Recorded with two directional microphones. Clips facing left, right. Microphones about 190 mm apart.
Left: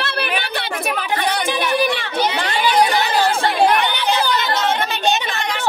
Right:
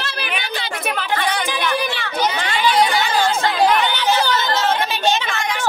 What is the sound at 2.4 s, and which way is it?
Chatter, 35° left (ahead or behind).